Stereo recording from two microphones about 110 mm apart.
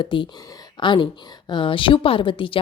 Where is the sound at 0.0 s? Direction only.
50° left (ahead or behind).